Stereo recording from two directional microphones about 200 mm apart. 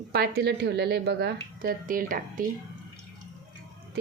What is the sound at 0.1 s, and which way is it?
A woman's voice, 50° right (ahead or behind).